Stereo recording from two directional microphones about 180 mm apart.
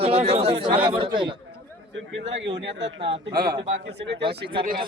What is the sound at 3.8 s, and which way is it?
Speech, 75° right (ahead or behind).